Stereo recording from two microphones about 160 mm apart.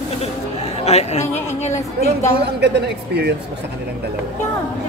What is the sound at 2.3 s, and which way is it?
Speech, 90° right.